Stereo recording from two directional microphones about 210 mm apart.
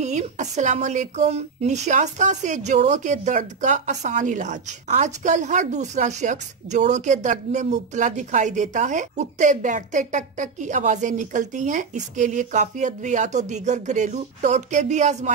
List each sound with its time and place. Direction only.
0.0 s a woman's voice: 35° right (ahead or behind)